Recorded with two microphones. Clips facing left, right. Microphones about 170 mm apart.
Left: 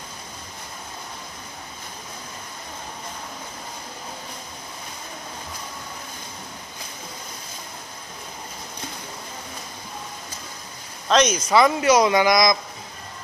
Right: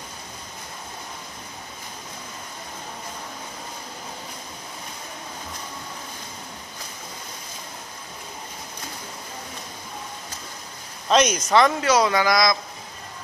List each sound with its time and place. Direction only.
11.1 s speech: 5° right (ahead or behind)
11.5 s speech: 10° left (ahead or behind)